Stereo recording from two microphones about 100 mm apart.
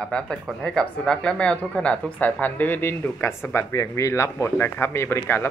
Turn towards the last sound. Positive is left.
turn(degrees=25)  # may be behind; listen again after turning